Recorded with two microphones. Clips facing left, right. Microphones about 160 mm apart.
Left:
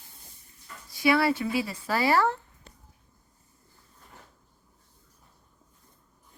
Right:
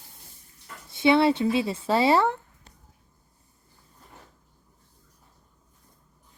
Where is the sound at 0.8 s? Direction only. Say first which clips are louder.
Right 4 dB; 25° right (ahead or behind).